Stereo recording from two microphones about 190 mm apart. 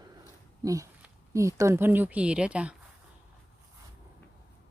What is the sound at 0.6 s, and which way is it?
Speech, 15° right (ahead or behind).